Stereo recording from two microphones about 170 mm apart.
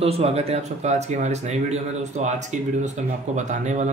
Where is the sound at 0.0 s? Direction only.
35° right (ahead or behind).